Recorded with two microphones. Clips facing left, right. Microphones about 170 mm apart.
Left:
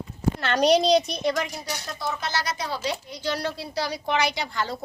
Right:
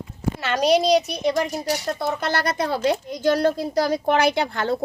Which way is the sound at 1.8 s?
60° right (ahead or behind).